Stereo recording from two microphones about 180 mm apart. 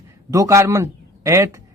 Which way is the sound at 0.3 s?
15° right (ahead or behind).